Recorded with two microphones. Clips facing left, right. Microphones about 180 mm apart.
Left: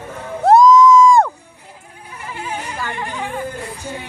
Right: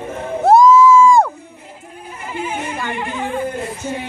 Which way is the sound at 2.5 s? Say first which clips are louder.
Right 3 dB; 20° right (ahead or behind).